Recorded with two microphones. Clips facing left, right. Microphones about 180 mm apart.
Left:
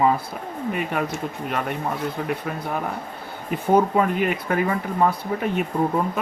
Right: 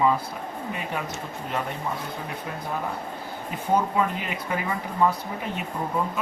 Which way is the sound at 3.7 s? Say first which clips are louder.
Left 5 dB; 55° left (ahead or behind).